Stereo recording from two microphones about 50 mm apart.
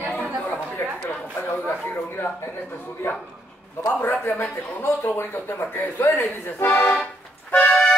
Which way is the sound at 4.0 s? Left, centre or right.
Left.